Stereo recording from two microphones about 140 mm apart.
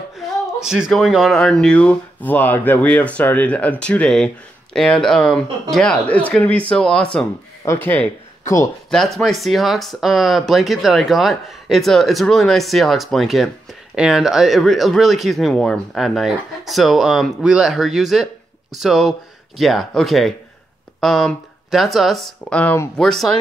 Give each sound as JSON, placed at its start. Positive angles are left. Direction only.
{"t": 0.6, "sound": "speech", "side_deg": -5}
{"t": 7.6, "sound": "speech", "side_deg": 15}
{"t": 8.9, "sound": "speech", "side_deg": 0}